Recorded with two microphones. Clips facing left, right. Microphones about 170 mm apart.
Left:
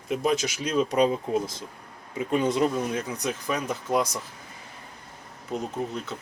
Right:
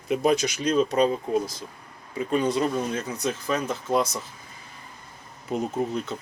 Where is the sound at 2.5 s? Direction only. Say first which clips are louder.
Even; 15° left (ahead or behind).